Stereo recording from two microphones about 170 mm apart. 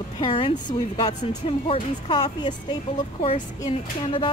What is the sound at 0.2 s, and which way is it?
Speech, 30° left (ahead or behind).